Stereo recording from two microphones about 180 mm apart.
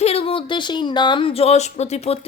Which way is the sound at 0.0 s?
35° left (ahead or behind).